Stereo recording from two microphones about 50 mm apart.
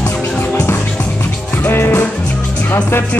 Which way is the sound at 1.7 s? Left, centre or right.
Left.